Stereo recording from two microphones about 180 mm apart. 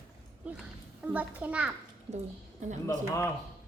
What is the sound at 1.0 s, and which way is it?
Speech, 10° right (ahead or behind).